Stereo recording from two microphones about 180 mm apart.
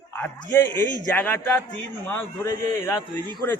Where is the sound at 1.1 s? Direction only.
10° left (ahead or behind).